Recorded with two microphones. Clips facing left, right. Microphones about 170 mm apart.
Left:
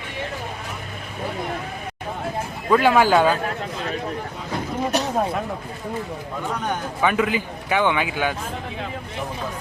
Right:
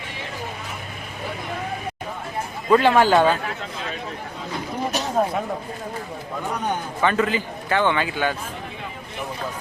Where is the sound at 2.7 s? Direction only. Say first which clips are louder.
Right 1 dB; 5° left (ahead or behind).